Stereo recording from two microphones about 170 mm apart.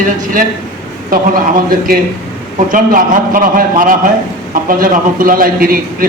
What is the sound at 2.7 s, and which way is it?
A man's voice, 55° right (ahead or behind).